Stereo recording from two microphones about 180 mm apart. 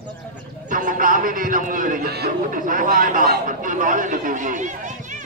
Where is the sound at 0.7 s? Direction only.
50° right (ahead or behind).